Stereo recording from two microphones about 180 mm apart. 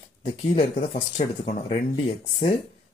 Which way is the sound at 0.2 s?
40° left (ahead or behind).